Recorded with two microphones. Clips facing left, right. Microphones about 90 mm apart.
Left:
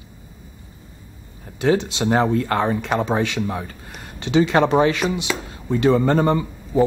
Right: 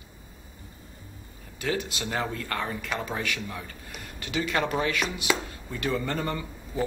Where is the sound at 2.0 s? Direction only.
35° left (ahead or behind).